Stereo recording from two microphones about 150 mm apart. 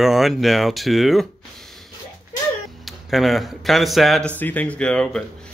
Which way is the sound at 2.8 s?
Centre (ahead or behind).